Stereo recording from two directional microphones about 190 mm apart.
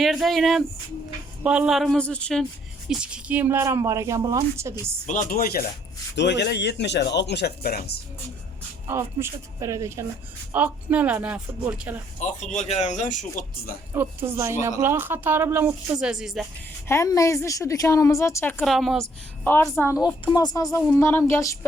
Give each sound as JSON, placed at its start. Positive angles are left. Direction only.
{"t": 0.0, "sound": "a man's voice", "side_deg": 0}
{"t": 5.0, "sound": "speech", "side_deg": 45}
{"t": 6.1, "sound": "speech", "side_deg": 65}
{"t": 8.9, "sound": "speech", "side_deg": -15}
{"t": 12.2, "sound": "speech", "side_deg": 35}
{"t": 13.9, "sound": "speech", "side_deg": -10}
{"t": 16.9, "sound": "a woman's voice", "side_deg": 15}
{"t": 19.5, "sound": "a woman's voice", "side_deg": 10}